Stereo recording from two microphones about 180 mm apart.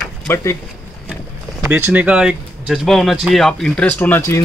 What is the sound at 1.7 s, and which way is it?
Speech, 10° right (ahead or behind).